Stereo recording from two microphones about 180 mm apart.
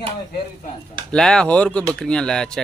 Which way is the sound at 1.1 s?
5° left (ahead or behind).